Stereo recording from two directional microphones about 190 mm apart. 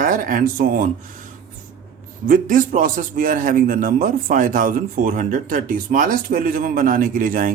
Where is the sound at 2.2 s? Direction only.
45° right (ahead or behind).